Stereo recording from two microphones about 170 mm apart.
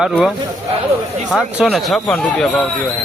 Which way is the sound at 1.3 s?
Centre (ahead or behind).